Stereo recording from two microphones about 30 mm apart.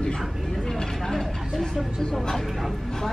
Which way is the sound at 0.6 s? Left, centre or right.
Centre.